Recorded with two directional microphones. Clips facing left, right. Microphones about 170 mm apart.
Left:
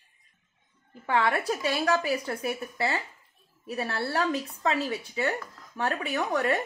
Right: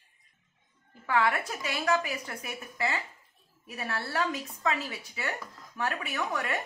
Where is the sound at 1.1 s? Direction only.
30° left (ahead or behind).